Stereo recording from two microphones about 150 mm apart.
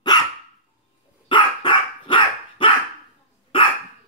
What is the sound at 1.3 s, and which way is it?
Dog, 35° left (ahead or behind).